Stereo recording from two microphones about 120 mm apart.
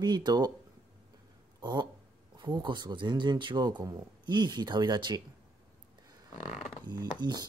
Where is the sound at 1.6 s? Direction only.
35° right (ahead or behind).